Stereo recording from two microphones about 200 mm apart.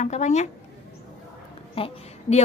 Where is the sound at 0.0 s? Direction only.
35° left (ahead or behind).